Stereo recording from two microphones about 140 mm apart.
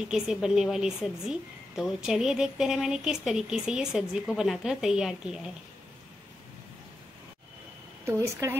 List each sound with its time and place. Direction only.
0.1 s a woman's voice: 5° right (ahead or behind)
8.0 s a woman's voice: 20° right (ahead or behind)